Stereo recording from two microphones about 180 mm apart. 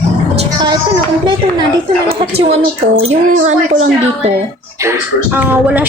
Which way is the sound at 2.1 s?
35° right (ahead or behind).